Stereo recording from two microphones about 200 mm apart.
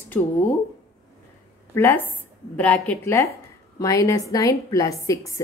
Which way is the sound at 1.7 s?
10° left (ahead or behind).